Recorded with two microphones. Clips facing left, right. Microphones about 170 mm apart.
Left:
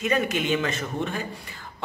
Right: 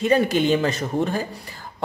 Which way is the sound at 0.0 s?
30° right (ahead or behind).